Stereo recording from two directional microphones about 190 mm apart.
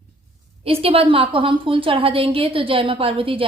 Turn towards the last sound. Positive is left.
turn(degrees=-30)  # may be behind; listen again after turning